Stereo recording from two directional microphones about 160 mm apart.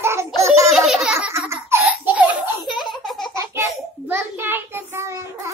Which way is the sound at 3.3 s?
20° right (ahead or behind).